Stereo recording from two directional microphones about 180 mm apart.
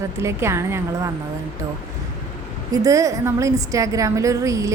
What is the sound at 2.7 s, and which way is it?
Speech, 20° right (ahead or behind).